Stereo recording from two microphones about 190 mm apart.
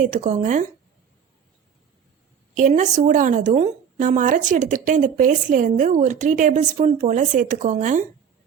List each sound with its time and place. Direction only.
0.0 s a woman's voice: 40° right (ahead or behind)
2.6 s a woman's voice: 40° right (ahead or behind)